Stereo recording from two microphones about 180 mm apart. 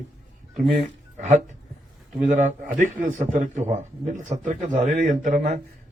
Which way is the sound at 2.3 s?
50° right (ahead or behind).